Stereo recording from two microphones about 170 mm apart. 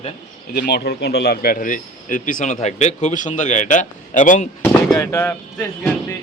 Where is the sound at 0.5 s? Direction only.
70° left (ahead or behind); by 4.4 s 50° left (ahead or behind).